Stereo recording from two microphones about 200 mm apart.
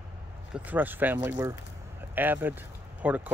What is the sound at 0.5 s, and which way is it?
Speech, 10° right (ahead or behind).